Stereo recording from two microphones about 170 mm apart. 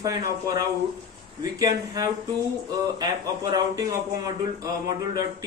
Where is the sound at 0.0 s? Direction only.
20° right (ahead or behind).